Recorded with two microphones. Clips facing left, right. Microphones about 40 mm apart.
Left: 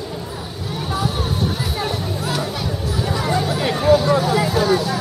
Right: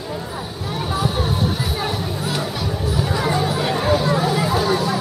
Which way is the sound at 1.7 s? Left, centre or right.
Centre.